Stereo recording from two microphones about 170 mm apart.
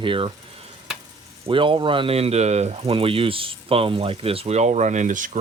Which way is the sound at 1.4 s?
30° right (ahead or behind).